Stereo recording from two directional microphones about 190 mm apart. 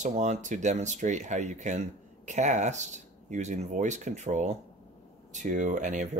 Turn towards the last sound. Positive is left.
turn(degrees=-40)  # may be behind; listen again after turning